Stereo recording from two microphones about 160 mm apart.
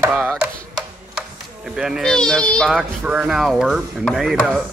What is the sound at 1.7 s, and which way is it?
Speech, 5° right (ahead or behind).